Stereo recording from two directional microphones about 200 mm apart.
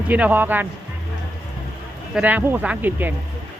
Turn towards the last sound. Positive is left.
turn(degrees=-10)  # may be behind; listen again after turning